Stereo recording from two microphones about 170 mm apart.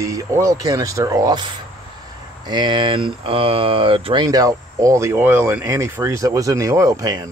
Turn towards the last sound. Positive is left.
turn(degrees=-20)  # may be behind; listen again after turning